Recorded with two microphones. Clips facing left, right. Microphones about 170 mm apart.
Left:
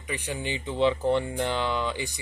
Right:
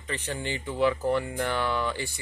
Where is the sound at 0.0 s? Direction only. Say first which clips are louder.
Left 1 dB; 10° left (ahead or behind).